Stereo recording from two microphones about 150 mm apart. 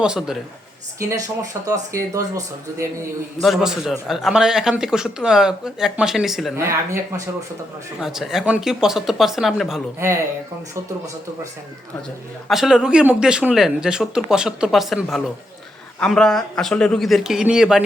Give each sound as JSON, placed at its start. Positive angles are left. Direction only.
{"t": 0.0, "sound": "speech", "side_deg": -5}
{"t": 0.9, "sound": "speech", "side_deg": -20}
{"t": 3.4, "sound": "speech", "side_deg": 0}
{"t": 6.6, "sound": "speech", "side_deg": -20}
{"t": 7.9, "sound": "speech", "side_deg": 0}
{"t": 12.5, "sound": "speech", "side_deg": 0}